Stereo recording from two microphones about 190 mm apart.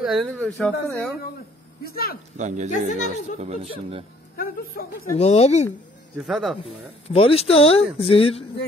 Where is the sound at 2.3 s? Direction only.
40° right (ahead or behind).